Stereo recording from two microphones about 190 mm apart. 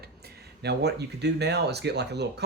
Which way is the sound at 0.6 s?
60° right (ahead or behind).